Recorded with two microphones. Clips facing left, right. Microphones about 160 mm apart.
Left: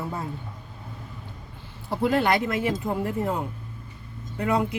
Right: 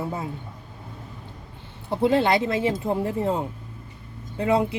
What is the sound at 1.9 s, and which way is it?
Speech, 25° right (ahead or behind).